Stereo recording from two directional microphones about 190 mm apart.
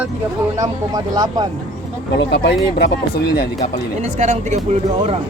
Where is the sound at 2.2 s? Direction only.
60° left (ahead or behind).